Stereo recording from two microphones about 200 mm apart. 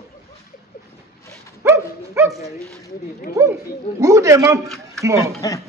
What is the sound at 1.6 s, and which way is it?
Dog, 15° right (ahead or behind).